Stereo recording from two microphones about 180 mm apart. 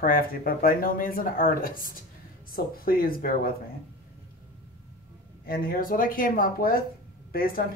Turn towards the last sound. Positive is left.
turn(degrees=55)  # may be behind; listen again after turning